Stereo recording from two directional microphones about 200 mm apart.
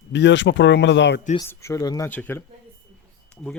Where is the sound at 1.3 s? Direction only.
15° left (ahead or behind).